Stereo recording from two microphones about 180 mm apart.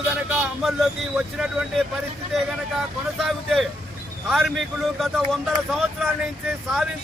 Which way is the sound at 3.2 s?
Centre (ahead or behind).